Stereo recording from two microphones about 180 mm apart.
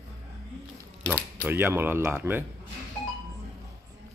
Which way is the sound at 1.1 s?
10° right (ahead or behind).